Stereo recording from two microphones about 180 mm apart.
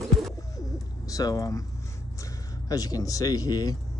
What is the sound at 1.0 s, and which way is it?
Speech, 20° left (ahead or behind).